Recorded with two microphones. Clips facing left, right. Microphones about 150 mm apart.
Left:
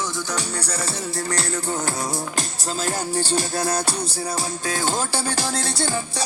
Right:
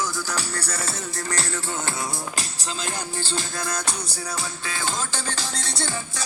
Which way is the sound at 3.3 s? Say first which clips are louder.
Left 6 dB; 35° left (ahead or behind).